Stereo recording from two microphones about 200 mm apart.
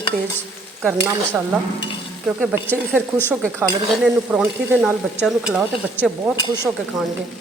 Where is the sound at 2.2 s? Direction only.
5° right (ahead or behind).